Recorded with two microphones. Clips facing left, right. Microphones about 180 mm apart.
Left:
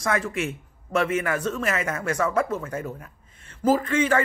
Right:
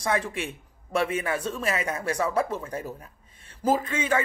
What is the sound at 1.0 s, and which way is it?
A woman's voice, 10° right (ahead or behind).